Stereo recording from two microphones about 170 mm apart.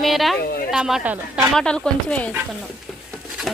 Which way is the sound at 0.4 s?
60° left (ahead or behind).